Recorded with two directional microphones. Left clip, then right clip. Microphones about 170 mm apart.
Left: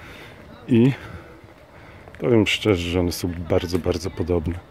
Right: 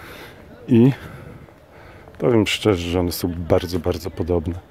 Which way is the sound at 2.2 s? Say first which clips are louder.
Right 1 dB; 20° right (ahead or behind).